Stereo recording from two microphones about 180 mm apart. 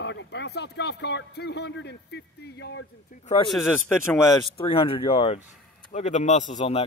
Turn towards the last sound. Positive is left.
turn(degrees=35)  # may be behind; listen again after turning